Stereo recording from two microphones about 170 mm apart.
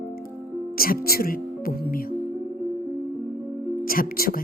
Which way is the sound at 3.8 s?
60° left (ahead or behind).